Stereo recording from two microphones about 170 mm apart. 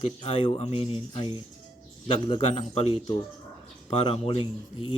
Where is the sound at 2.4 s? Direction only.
35° left (ahead or behind).